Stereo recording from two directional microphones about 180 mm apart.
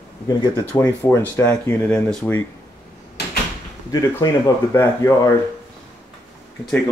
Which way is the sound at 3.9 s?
20° left (ahead or behind).